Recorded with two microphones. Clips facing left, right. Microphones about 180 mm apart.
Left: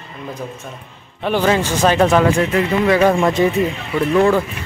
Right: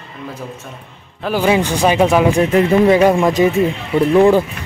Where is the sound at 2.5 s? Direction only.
25° right (ahead or behind).